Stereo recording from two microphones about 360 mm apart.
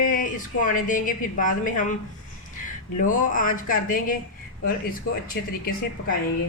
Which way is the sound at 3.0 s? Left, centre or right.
Left.